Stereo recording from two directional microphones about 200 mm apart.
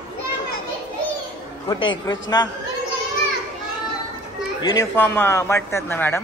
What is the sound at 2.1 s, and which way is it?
Speech, 20° left (ahead or behind).